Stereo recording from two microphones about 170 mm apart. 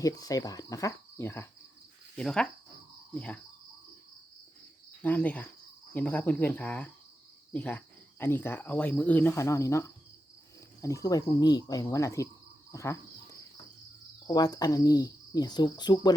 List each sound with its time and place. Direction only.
0.0 s cricket: 20° left (ahead or behind)
2.1 s speech: 5° left (ahead or behind)
5.0 s speech: 10° left (ahead or behind)
10.8 s cricket: 20° left (ahead or behind)
12.7 s speech: 15° left (ahead or behind)
14.3 s cricket: 25° left (ahead or behind)